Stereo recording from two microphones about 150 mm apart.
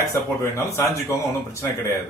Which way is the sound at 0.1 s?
20° left (ahead or behind).